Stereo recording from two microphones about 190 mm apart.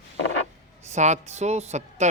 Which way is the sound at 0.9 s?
40° right (ahead or behind).